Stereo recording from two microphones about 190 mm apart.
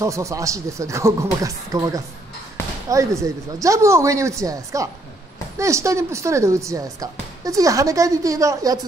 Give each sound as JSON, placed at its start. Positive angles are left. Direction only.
{"t": 0.0, "sound": "speech", "side_deg": -15}